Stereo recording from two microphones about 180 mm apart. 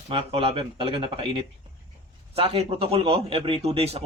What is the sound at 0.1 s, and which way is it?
A man's voice, 30° right (ahead or behind).